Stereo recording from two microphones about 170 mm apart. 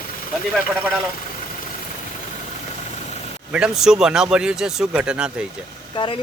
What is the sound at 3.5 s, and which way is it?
Speech, 5° right (ahead or behind).